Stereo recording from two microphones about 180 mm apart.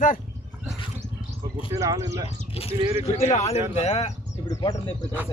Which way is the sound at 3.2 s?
35° left (ahead or behind).